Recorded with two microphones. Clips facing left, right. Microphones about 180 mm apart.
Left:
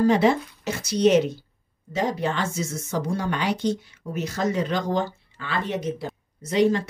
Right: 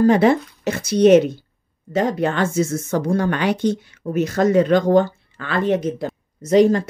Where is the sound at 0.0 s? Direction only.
55° right (ahead or behind).